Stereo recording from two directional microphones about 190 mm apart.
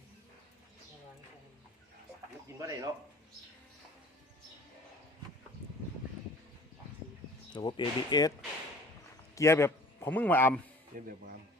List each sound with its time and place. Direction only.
2.6 s speech: 20° right (ahead or behind)
7.5 s speech: 25° left (ahead or behind)
9.3 s a man's voice: 15° left (ahead or behind)
10.9 s speech: 50° right (ahead or behind)